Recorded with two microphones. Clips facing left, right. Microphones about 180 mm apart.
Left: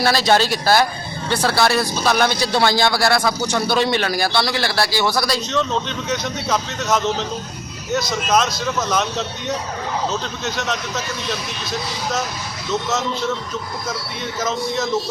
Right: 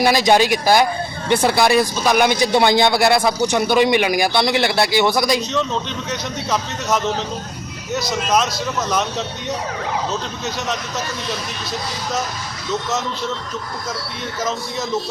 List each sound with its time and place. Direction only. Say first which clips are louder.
0.0 s speech: right 2 dB; 15° right (ahead or behind)
6.1 s speech: left 2 dB; centre (ahead or behind)
8.3 s speech: left 1 dB; centre (ahead or behind)